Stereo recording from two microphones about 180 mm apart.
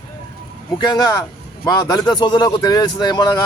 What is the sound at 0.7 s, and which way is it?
A man's voice, 25° left (ahead or behind).